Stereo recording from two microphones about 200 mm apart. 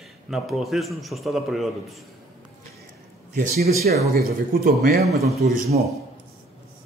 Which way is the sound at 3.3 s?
45° right (ahead or behind).